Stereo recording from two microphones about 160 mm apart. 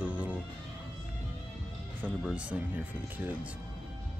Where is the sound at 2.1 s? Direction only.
5° right (ahead or behind).